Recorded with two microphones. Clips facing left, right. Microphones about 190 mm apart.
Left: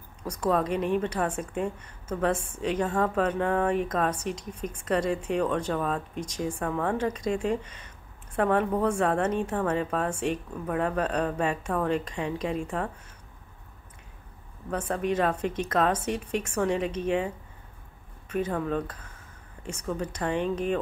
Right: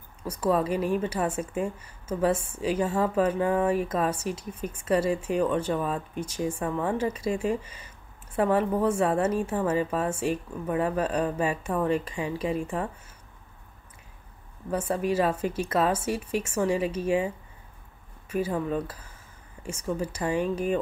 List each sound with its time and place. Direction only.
0.2 s speech: 5° right (ahead or behind)
14.7 s a woman's voice: 5° right (ahead or behind)
18.3 s a woman's voice: 5° right (ahead or behind)